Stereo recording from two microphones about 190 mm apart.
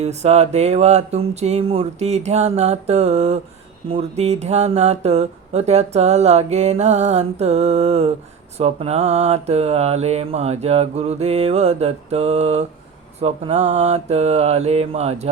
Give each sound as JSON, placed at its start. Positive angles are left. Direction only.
{"t": 0.0, "sound": "speech", "side_deg": -35}